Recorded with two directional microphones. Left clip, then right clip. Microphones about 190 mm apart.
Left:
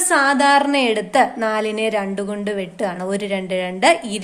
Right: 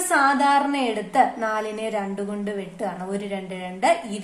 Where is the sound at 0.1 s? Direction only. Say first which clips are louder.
Left 4 dB; 40° left (ahead or behind).